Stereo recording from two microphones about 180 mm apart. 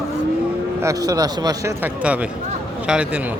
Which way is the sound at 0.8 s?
20° right (ahead or behind).